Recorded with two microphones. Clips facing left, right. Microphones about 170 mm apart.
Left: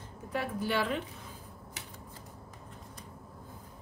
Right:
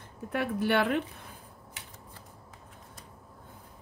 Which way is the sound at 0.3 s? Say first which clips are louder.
Right 5 dB; 65° right (ahead or behind).